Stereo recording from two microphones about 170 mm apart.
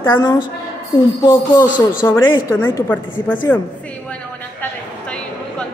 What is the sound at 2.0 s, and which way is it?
Speech, 15° left (ahead or behind).